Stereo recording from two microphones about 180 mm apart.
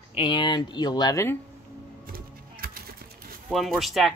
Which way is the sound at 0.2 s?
25° left (ahead or behind).